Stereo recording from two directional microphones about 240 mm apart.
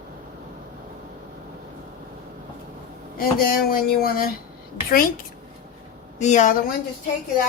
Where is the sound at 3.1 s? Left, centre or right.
Left.